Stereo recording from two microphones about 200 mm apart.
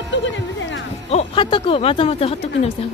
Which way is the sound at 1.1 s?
30° left (ahead or behind).